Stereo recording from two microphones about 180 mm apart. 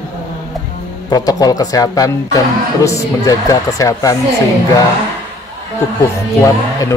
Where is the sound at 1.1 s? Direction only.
20° left (ahead or behind).